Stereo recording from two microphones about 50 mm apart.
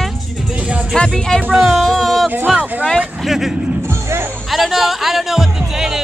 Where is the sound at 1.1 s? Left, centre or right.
Centre.